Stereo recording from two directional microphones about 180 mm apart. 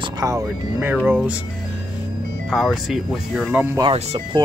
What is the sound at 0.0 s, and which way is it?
Music, 20° right (ahead or behind).